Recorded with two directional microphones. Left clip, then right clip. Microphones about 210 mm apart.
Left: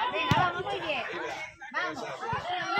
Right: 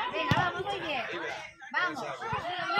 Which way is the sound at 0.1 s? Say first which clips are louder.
Left 2 dB; 55° right (ahead or behind).